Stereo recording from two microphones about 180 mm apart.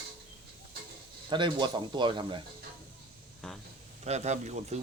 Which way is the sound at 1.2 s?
25° right (ahead or behind).